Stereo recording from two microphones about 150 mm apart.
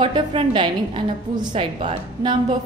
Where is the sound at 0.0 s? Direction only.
35° right (ahead or behind).